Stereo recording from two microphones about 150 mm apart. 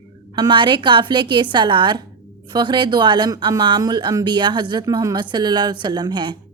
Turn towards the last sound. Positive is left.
turn(degrees=-30)  # may be behind; listen again after turning